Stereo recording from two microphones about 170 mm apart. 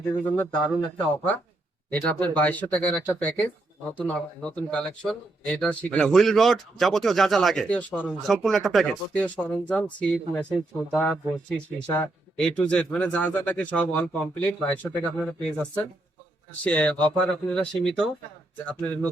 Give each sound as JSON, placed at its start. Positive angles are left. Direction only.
{"t": 0.3, "sound": "speech", "side_deg": 10}
{"t": 16.6, "sound": "speech", "side_deg": 5}